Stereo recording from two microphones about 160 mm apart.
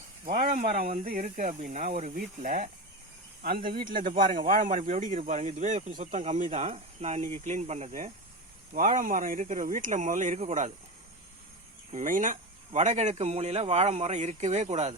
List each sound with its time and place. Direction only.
0.3 s speech: 50° right (ahead or behind)
1.0 s speech: 55° right (ahead or behind)
3.9 s speech: 55° right (ahead or behind)
11.9 s speech: 55° right (ahead or behind)